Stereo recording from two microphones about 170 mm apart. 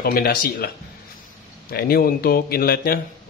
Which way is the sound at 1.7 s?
65° left (ahead or behind).